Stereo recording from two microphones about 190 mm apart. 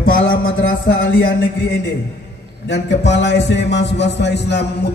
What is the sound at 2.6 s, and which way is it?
A man's voice, 65° left (ahead or behind).